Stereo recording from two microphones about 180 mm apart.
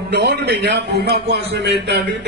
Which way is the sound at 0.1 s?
70° right (ahead or behind).